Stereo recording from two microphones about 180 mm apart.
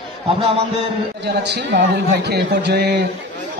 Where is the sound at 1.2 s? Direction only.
70° right (ahead or behind).